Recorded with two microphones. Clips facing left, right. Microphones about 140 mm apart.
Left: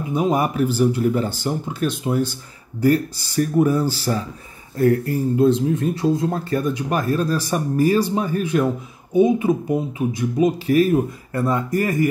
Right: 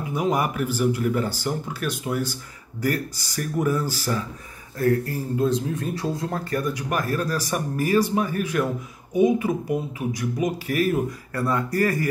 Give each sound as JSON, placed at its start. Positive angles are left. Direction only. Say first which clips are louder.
{"t": 0.1, "sound": "speech", "louder": "left 4 dB", "side_deg": 25}